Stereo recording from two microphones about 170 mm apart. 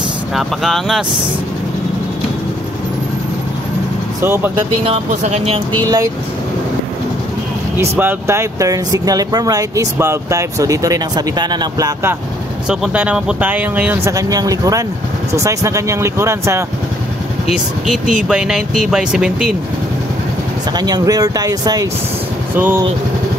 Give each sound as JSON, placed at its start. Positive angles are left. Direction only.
{"t": 0.3, "sound": "speech", "side_deg": 0}
{"t": 4.2, "sound": "speech", "side_deg": -15}
{"t": 4.8, "sound": "speech", "side_deg": -40}
{"t": 7.7, "sound": "speech", "side_deg": -15}
{"t": 12.6, "sound": "speech", "side_deg": -5}
{"t": 14.1, "sound": "speech", "side_deg": -20}
{"t": 17.8, "sound": "speech", "side_deg": -5}
{"t": 20.7, "sound": "speech", "side_deg": -25}